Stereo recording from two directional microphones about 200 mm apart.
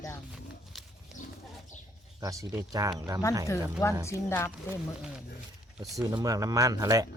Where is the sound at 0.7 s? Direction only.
Centre (ahead or behind).